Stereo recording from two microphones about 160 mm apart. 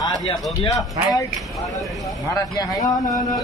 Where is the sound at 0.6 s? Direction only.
20° left (ahead or behind).